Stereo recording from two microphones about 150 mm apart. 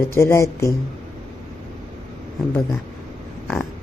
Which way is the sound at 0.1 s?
15° left (ahead or behind).